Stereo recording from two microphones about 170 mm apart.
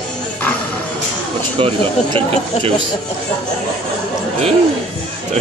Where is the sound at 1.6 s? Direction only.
35° right (ahead or behind).